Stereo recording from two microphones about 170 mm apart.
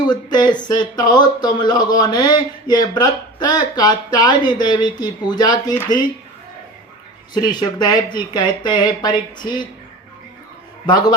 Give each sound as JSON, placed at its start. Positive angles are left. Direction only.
{"t": 0.1, "sound": "speech", "side_deg": 25}
{"t": 7.3, "sound": "speech", "side_deg": 25}
{"t": 10.8, "sound": "speech", "side_deg": 25}